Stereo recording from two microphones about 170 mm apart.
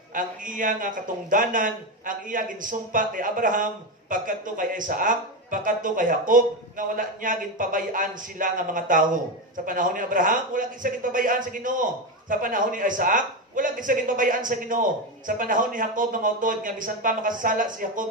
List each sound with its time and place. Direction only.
0.1 s a man's voice: 55° right (ahead or behind)